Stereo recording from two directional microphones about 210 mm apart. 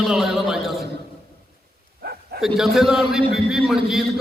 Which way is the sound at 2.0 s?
50° right (ahead or behind).